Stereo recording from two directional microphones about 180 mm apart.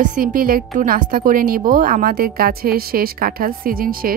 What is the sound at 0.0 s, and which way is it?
A woman's voice, 50° right (ahead or behind).